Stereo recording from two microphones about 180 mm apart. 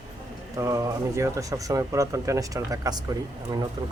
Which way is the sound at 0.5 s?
20° right (ahead or behind).